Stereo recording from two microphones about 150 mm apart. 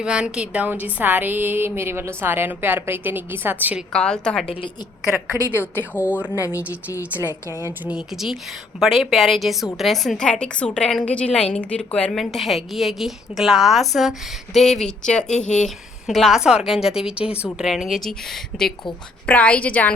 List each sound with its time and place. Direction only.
0.0 s a woman's voice: 5° right (ahead or behind)
3.9 s a woman's voice: 5° left (ahead or behind)
5.4 s a woman's voice: 15° left (ahead or behind)
7.9 s a woman's voice: 5° right (ahead or behind)